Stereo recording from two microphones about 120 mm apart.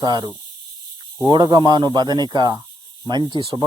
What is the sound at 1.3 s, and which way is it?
Speech, 40° right (ahead or behind).